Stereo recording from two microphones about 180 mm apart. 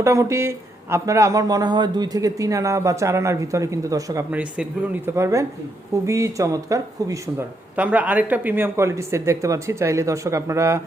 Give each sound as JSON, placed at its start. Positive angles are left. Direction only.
{"t": 0.0, "sound": "speech", "side_deg": -15}